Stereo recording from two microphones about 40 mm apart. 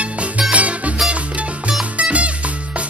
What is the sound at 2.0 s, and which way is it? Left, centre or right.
Music, right.